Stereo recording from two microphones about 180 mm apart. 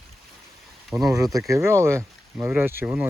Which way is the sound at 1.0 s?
20° right (ahead or behind).